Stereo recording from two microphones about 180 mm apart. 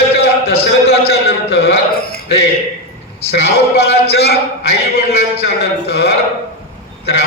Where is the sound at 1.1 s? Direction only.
65° left (ahead or behind).